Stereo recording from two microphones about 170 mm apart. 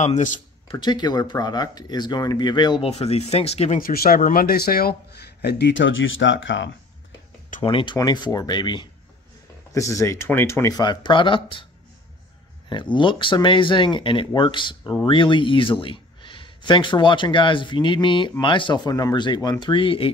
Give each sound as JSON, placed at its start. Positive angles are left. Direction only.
{"t": 0.0, "sound": "speech", "side_deg": 45}
{"t": 0.7, "sound": "speech", "side_deg": 25}
{"t": 3.8, "sound": "speech", "side_deg": 60}
{"t": 7.6, "sound": "speech", "side_deg": 30}
{"t": 12.6, "sound": "speech", "side_deg": 25}